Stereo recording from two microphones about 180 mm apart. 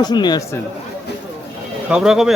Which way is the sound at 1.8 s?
5° right (ahead or behind).